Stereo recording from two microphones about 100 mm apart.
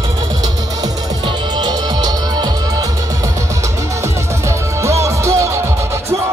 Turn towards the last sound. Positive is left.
turn(degrees=-30)  # may be behind; listen again after turning